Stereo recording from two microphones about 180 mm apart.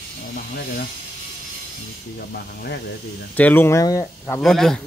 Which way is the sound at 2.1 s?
60° left (ahead or behind).